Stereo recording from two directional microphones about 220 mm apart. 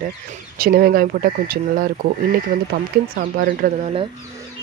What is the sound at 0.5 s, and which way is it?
Speech, 40° right (ahead or behind).